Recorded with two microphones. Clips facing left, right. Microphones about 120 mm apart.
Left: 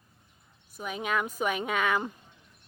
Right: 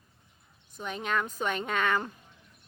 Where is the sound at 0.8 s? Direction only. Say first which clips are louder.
Left 1 dB; 5° left (ahead or behind).